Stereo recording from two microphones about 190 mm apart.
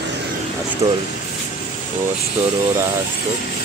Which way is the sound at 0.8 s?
15° right (ahead or behind).